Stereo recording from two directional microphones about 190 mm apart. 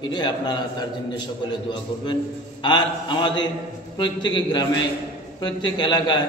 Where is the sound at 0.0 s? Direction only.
25° left (ahead or behind).